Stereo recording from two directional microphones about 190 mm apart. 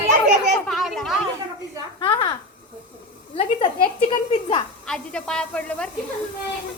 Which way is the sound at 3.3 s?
25° left (ahead or behind).